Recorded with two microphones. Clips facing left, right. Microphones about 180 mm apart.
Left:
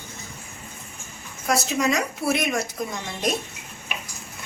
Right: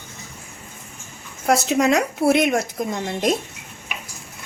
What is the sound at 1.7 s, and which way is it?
Speech, 60° right (ahead or behind).